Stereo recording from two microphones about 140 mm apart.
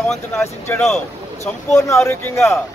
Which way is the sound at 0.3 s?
15° left (ahead or behind).